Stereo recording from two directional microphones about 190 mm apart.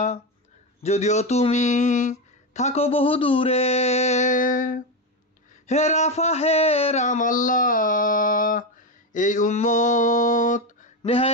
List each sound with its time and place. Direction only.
0.8 s speech: 35° left (ahead or behind)
9.1 s mantra: 40° left (ahead or behind)
11.0 s speech: 30° left (ahead or behind)